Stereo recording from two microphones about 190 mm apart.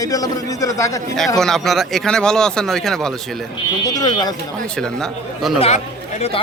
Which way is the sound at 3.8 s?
20° left (ahead or behind).